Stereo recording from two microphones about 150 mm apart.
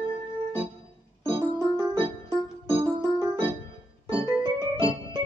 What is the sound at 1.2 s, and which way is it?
Keyboard, 30° right (ahead or behind).